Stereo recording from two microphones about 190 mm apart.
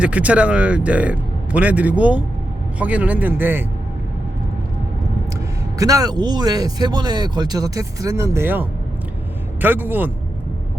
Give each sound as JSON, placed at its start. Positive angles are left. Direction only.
{"t": 0.0, "sound": "speech", "side_deg": -5}
{"t": 5.8, "sound": "speech", "side_deg": -20}